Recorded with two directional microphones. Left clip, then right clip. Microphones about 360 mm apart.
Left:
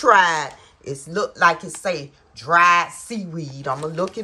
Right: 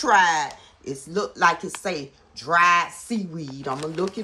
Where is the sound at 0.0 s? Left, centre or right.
Centre.